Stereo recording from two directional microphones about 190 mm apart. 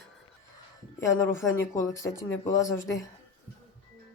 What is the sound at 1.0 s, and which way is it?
Speech, 15° left (ahead or behind).